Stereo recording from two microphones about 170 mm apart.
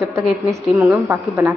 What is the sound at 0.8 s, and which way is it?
Speech, 10° right (ahead or behind).